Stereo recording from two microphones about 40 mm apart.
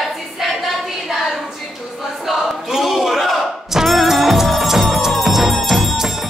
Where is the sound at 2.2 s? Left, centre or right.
Centre.